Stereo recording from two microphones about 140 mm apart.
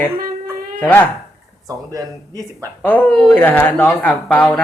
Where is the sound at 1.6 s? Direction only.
25° right (ahead or behind).